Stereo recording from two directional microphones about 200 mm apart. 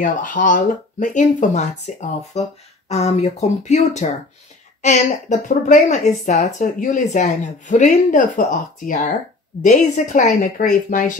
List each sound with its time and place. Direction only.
0.0 s speech: 40° left (ahead or behind)